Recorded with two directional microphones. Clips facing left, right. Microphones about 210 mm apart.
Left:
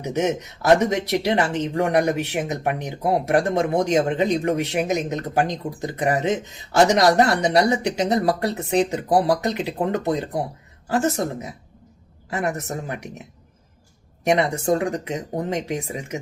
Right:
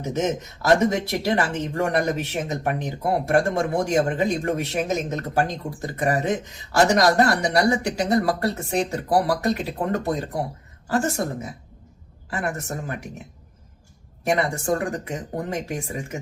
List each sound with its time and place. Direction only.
0.0 s a woman's voice: 15° left (ahead or behind)
14.3 s speech: 20° left (ahead or behind)